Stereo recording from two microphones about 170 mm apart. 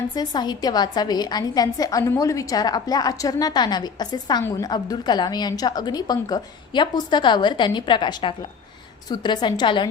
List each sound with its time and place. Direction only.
0.1 s a woman's voice: 25° left (ahead or behind)